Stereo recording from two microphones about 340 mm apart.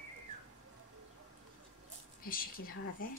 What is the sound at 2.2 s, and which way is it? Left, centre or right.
Speech, left.